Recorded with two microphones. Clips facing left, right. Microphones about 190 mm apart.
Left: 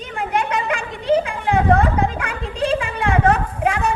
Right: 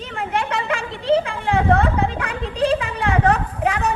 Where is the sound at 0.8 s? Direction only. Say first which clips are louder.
Right 1 dB; 30° right (ahead or behind).